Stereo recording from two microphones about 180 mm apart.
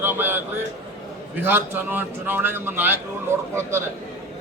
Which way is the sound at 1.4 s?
10° right (ahead or behind).